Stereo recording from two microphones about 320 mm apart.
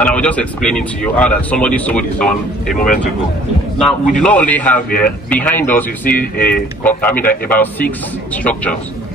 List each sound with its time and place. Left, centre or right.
0.0 s a man's voice: centre
2.7 s speech: left
3.7 s a man's voice: centre